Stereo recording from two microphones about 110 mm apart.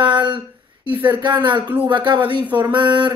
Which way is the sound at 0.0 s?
50° right (ahead or behind).